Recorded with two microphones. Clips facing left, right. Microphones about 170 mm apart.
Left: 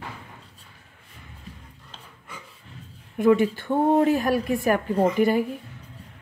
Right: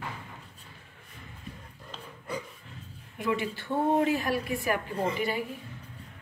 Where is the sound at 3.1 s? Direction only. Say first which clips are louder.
Left 11 dB; 50° left (ahead or behind).